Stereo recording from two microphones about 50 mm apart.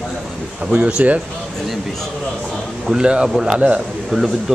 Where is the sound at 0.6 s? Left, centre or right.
Right.